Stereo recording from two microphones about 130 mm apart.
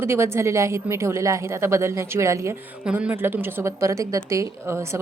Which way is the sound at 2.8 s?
10° right (ahead or behind).